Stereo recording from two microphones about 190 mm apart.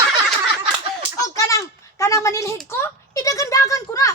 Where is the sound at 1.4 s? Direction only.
15° left (ahead or behind).